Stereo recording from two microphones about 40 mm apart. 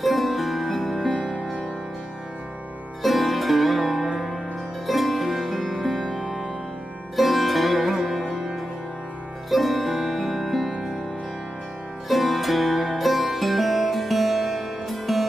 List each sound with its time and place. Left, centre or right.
0.0 s music: centre
1.3 s music: left
3.0 s music: centre
5.9 s music: centre
7.2 s music: centre
9.5 s music: centre
12.1 s music: centre